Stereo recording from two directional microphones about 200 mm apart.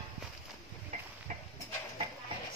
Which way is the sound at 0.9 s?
35° right (ahead or behind).